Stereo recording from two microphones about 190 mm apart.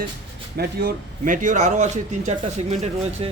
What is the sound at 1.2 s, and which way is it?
Speech, 45° right (ahead or behind).